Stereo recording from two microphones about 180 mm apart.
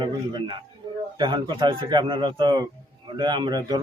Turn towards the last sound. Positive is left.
turn(degrees=-25)  # may be behind; listen again after turning